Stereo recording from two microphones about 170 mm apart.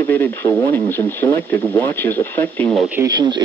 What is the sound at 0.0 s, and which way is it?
Speech, 10° left (ahead or behind).